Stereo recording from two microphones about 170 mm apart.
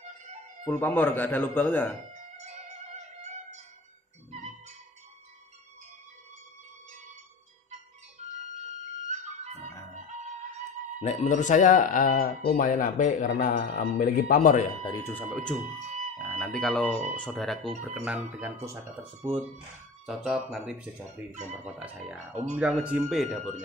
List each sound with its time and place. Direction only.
0.7 s speech: 10° left (ahead or behind)
8.6 s music: 40° right (ahead or behind)
11.0 s speech: 40° left (ahead or behind)
14.9 s speech: 15° left (ahead or behind)
15.3 s speech: 5° left (ahead or behind); by 18.8 s 15° right (ahead or behind)
20.1 s speech: 5° right (ahead or behind)